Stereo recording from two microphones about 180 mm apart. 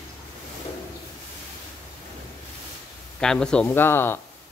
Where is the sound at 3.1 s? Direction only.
5° left (ahead or behind).